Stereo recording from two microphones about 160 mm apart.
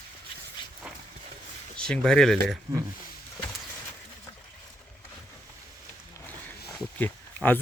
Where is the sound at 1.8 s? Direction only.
5° left (ahead or behind).